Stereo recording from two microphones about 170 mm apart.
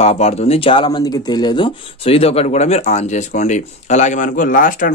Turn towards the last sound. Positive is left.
turn(degrees=50)  # may be behind; listen again after turning